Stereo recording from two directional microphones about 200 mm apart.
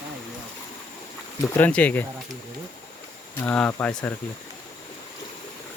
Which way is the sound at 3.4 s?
5° left (ahead or behind).